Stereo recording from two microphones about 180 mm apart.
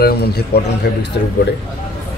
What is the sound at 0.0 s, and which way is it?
A man's voice, 60° left (ahead or behind).